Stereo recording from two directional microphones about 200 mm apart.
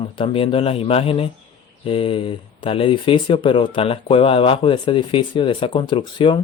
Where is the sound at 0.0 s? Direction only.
25° left (ahead or behind).